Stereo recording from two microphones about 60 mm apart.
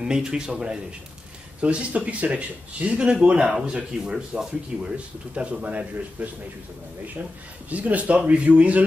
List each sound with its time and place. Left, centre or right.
0.1 s a man's voice: centre
7.7 s speech: right